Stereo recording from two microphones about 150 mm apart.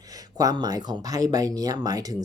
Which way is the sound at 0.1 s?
25° right (ahead or behind).